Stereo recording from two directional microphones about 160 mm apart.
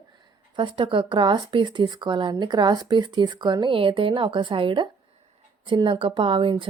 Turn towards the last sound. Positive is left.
turn(degrees=-30)  # may be behind; listen again after turning